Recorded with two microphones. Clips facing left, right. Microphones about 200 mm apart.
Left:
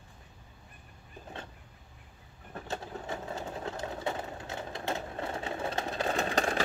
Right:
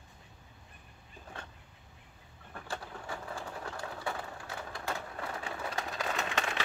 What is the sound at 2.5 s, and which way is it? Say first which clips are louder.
Vehicle: left 4 dB; 25° left (ahead or behind).